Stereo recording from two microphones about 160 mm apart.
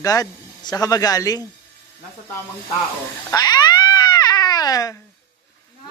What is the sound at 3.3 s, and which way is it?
Cat, 25° left (ahead or behind).